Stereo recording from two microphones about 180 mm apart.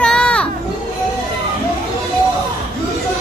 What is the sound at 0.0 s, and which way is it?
Children playing, 5° left (ahead or behind).